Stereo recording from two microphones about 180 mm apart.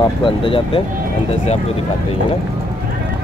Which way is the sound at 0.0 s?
30° left (ahead or behind).